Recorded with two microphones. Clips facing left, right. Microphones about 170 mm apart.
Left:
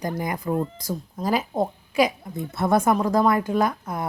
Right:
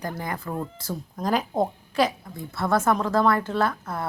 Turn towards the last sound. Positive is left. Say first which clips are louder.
# left 2 dB
turn(degrees=15)  # may be behind; listen again after turning